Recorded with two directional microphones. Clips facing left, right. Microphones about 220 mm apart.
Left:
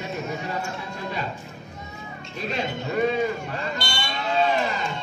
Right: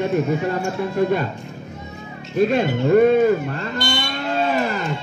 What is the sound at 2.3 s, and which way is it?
Speech, 50° right (ahead or behind).